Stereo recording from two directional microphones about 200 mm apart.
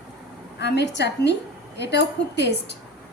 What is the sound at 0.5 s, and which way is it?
A woman's voice, 60° left (ahead or behind).